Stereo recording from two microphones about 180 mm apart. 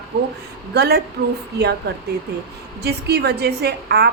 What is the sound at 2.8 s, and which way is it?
A woman's voice, 65° right (ahead or behind).